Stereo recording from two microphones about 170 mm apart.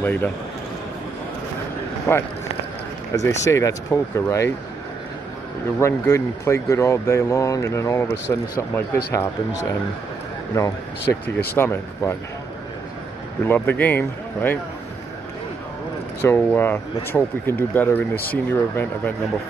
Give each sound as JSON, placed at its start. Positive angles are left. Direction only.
{"t": 0.0, "sound": "speech", "side_deg": 10}
{"t": 2.1, "sound": "speech", "side_deg": 15}
{"t": 5.8, "sound": "speech", "side_deg": 15}
{"t": 11.2, "sound": "speech", "side_deg": 10}
{"t": 13.5, "sound": "speech", "side_deg": 10}
{"t": 16.2, "sound": "speech", "side_deg": 15}